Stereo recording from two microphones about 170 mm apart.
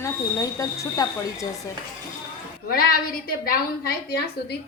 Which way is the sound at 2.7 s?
60° left (ahead or behind).